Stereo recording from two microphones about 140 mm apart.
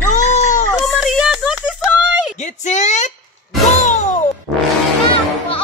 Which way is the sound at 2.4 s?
60° left (ahead or behind).